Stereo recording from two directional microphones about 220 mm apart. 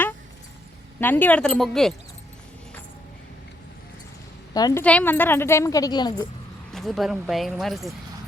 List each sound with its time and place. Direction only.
0.9 s speech: 10° left (ahead or behind)
4.5 s a woman's voice: 15° left (ahead or behind)
6.7 s speech: centre (ahead or behind)